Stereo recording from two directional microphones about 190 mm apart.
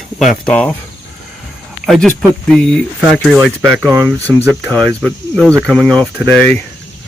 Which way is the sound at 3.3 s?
15° right (ahead or behind).